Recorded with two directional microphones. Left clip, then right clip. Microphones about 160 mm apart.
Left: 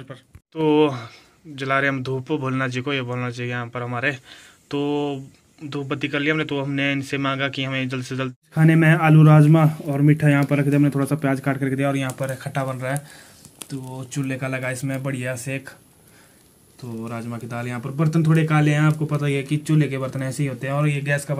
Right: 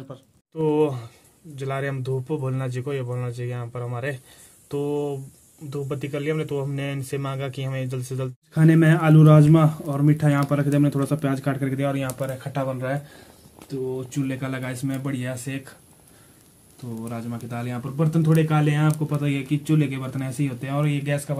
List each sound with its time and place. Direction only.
0.6 s speech: centre (ahead or behind)
12.2 s speech: 15° left (ahead or behind)
13.9 s speech: 15° left (ahead or behind)
17.0 s speech: 15° left (ahead or behind)